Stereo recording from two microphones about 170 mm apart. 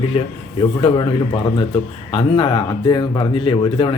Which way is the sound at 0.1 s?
35° left (ahead or behind).